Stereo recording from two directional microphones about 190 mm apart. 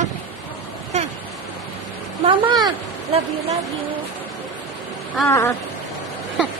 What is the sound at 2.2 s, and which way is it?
Speech, 25° right (ahead or behind).